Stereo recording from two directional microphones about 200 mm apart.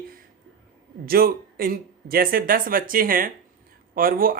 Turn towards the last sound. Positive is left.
turn(degrees=-45)  # may be behind; listen again after turning